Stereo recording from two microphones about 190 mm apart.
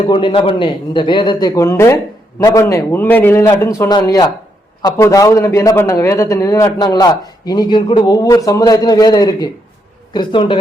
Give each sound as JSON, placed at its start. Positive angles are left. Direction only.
{"t": 0.1, "sound": "a man's voice", "side_deg": 25}